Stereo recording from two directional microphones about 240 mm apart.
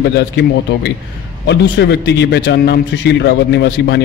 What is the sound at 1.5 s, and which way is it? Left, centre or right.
A man's voice, left.